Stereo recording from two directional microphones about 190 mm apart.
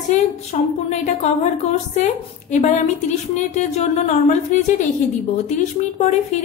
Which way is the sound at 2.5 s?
40° left (ahead or behind).